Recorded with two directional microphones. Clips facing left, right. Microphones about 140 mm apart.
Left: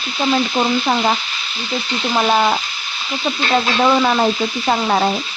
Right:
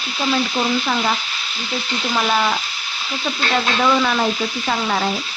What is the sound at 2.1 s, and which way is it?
Frying, 35° left (ahead or behind).